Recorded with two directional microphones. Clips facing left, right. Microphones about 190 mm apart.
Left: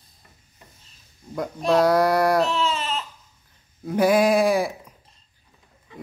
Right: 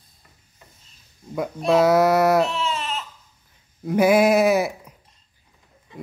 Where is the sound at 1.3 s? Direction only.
5° right (ahead or behind).